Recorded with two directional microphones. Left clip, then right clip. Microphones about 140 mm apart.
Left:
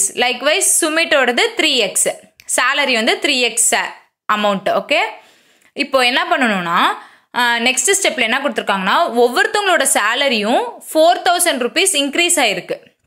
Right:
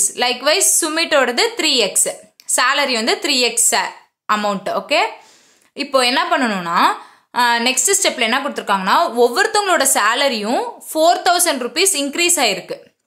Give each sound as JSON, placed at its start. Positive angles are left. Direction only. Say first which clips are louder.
{"t": 0.0, "sound": "a woman's voice", "louder": "left 1 dB", "side_deg": 20}
{"t": 6.4, "sound": "a woman's voice", "louder": "left 3 dB", "side_deg": 5}
{"t": 6.7, "sound": "a woman's voice", "louder": "even", "side_deg": 20}